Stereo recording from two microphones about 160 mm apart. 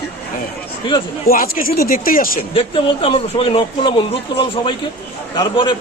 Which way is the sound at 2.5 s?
35° left (ahead or behind).